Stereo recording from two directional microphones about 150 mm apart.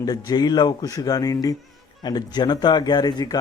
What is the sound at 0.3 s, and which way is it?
Speech, 25° left (ahead or behind).